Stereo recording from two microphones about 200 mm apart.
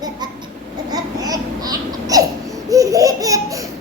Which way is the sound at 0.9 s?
20° right (ahead or behind).